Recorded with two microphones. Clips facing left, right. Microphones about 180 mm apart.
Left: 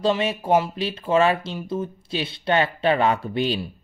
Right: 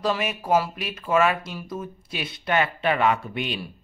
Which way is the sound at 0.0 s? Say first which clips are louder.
Left 4 dB; 25° left (ahead or behind).